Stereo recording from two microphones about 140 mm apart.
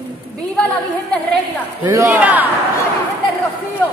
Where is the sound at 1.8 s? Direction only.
20° right (ahead or behind).